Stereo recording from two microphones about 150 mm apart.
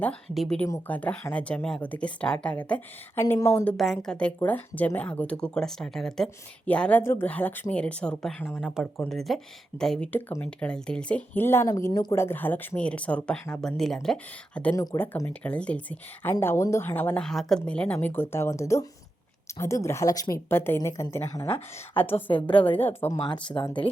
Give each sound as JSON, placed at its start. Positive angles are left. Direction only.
{"t": 0.0, "sound": "speech", "side_deg": 5}
{"t": 3.2, "sound": "a woman's voice", "side_deg": 20}
{"t": 3.6, "sound": "a woman's voice", "side_deg": 5}
{"t": 22.1, "sound": "speech", "side_deg": 35}
{"t": 22.8, "sound": "speech", "side_deg": 15}
{"t": 23.1, "sound": "speech", "side_deg": 30}